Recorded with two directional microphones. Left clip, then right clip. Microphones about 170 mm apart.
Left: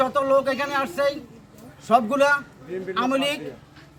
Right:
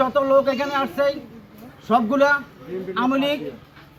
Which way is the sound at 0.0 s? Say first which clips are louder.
Right 3 dB; 25° left (ahead or behind).